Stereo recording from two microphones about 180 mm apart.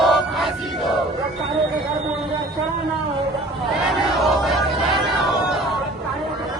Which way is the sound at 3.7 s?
Centre (ahead or behind).